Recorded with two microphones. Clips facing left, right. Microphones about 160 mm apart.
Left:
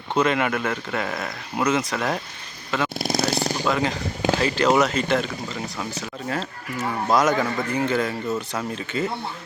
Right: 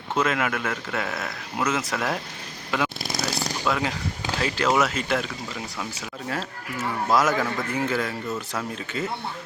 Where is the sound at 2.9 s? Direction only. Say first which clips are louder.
Left 7 dB; 50° left (ahead or behind).